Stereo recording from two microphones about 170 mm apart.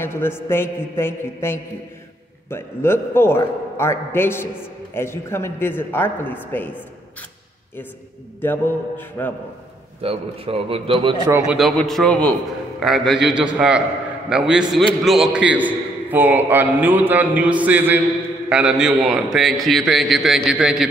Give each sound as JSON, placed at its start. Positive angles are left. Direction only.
{"t": 0.0, "sound": "a man's voice", "side_deg": 15}
{"t": 8.4, "sound": "a man's voice", "side_deg": 10}
{"t": 10.0, "sound": "a man's voice", "side_deg": -35}
{"t": 11.4, "sound": "a man's voice", "side_deg": 0}